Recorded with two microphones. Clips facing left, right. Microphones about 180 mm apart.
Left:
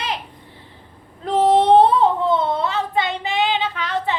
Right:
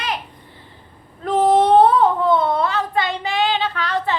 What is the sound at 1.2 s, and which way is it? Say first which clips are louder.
Speech: even; 25° left (ahead or behind).